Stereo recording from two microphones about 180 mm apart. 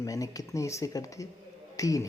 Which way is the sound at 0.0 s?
20° left (ahead or behind).